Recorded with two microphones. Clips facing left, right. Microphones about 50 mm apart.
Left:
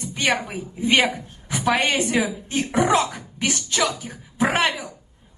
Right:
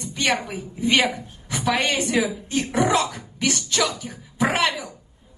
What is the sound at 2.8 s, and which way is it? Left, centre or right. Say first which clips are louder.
A woman's voice: left 2 dB; left.